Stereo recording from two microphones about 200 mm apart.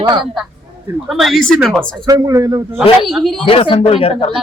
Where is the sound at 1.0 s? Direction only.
Centre (ahead or behind).